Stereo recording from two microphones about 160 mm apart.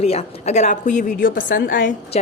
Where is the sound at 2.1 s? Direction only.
45° left (ahead or behind).